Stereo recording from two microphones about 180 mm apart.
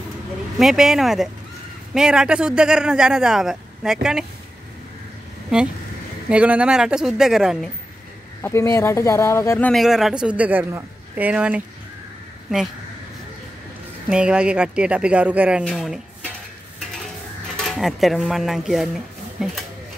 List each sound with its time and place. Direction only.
0.6 s speech: centre (ahead or behind)
6.2 s speech: 10° right (ahead or behind)
8.4 s speech: 15° left (ahead or behind)
9.7 s speech: centre (ahead or behind)
14.0 s speech: 5° right (ahead or behind)
17.6 s speech: centre (ahead or behind)